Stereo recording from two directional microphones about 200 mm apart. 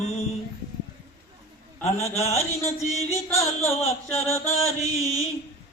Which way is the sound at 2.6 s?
30° left (ahead or behind).